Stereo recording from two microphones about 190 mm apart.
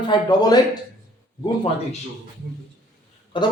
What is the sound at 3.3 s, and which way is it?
Speech, 25° left (ahead or behind).